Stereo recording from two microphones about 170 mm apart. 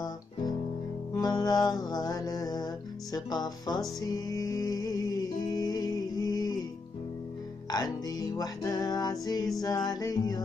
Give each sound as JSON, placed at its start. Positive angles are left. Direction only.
{"t": 1.1, "sound": "music", "side_deg": 20}
{"t": 7.7, "sound": "music", "side_deg": 20}